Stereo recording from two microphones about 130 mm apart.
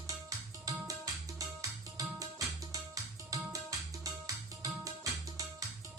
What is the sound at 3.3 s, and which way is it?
Music, 25° right (ahead or behind).